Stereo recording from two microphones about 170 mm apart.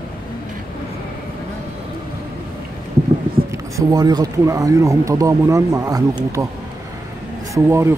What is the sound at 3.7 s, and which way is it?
Speech, 20° right (ahead or behind).